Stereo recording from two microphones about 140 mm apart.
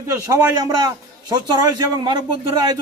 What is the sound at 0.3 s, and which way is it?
A man's voice, 25° right (ahead or behind).